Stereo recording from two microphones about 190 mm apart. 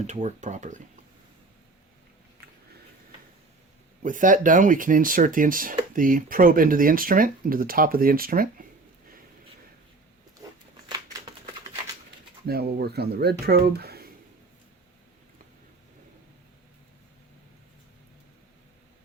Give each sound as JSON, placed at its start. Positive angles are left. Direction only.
{"t": 0.1, "sound": "speech", "side_deg": -35}
{"t": 4.0, "sound": "speech", "side_deg": -45}
{"t": 10.4, "sound": "a sound", "side_deg": -20}
{"t": 12.5, "sound": "speech", "side_deg": -55}